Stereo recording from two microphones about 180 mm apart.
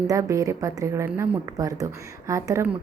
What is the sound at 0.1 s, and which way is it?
A woman's voice, 20° right (ahead or behind).